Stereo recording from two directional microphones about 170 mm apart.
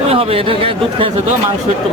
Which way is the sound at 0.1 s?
35° right (ahead or behind).